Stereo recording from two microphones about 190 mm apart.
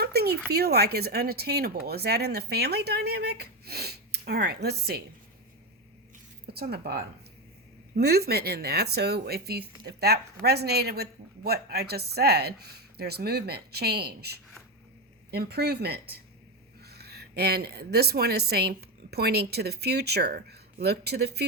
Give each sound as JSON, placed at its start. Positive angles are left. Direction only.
{"t": 0.0, "sound": "a sound", "side_deg": -55}
{"t": 0.5, "sound": "speech", "side_deg": -55}
{"t": 6.5, "sound": "speech", "side_deg": -55}